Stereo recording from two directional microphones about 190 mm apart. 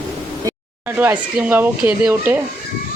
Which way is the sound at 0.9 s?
10° right (ahead or behind).